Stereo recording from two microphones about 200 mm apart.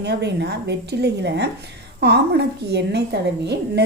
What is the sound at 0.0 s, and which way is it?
Speech, 60° right (ahead or behind).